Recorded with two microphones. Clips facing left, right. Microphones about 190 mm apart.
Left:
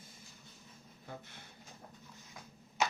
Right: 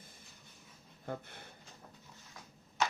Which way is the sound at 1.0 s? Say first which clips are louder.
Right 7 dB; 55° right (ahead or behind).